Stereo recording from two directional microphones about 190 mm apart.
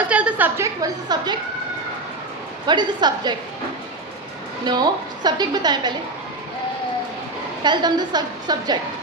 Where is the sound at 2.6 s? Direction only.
25° right (ahead or behind).